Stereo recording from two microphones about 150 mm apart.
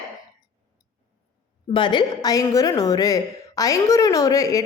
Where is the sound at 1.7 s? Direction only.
30° left (ahead or behind).